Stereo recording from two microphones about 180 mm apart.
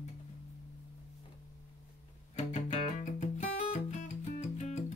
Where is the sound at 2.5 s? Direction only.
40° left (ahead or behind).